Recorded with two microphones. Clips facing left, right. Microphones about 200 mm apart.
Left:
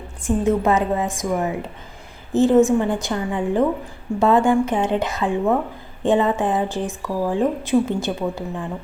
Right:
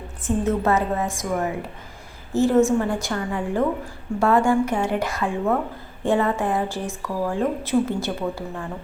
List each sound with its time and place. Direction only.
0.3 s a woman's voice: 15° left (ahead or behind)